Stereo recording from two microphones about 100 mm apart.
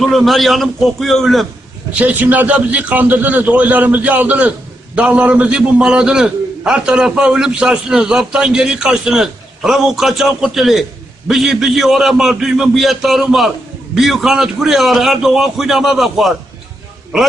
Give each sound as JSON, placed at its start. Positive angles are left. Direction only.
{"t": 0.0, "sound": "a man's voice", "side_deg": 0}
{"t": 1.9, "sound": "a man's voice", "side_deg": -15}